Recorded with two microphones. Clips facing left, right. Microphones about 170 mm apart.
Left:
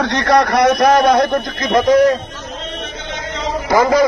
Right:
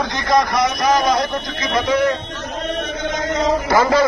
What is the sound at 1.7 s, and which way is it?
Speech, 40° left (ahead or behind).